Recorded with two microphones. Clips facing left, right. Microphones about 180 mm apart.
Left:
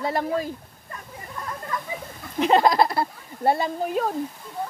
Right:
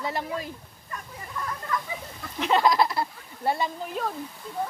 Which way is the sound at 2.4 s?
45° left (ahead or behind).